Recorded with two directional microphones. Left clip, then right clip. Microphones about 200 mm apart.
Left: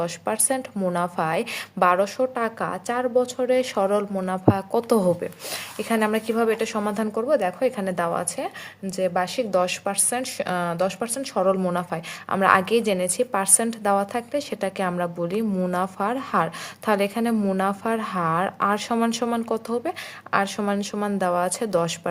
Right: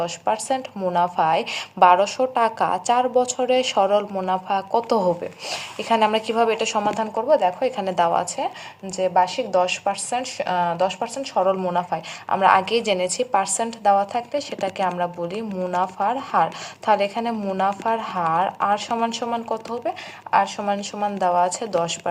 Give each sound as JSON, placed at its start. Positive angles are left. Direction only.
{"t": 0.0, "sound": "a woman's voice", "side_deg": 50}